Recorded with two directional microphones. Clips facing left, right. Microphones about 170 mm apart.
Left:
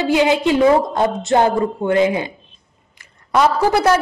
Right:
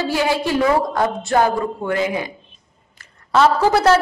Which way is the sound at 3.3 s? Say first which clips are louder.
Even; 15° left (ahead or behind).